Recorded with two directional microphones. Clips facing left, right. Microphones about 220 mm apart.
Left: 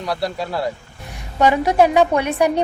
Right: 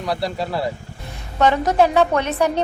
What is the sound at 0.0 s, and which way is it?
Speech, centre (ahead or behind).